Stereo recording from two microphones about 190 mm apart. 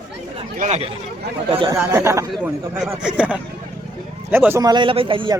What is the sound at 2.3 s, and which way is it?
A man's voice, 5° right (ahead or behind).